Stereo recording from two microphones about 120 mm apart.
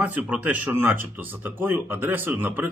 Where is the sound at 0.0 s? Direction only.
15° right (ahead or behind).